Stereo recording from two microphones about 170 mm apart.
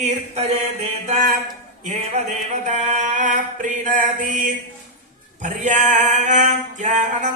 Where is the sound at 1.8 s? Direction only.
45° right (ahead or behind).